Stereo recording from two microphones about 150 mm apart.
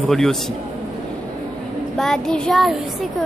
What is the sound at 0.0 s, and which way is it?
Speech, centre (ahead or behind).